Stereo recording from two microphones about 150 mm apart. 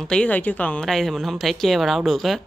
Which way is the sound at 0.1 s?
10° left (ahead or behind).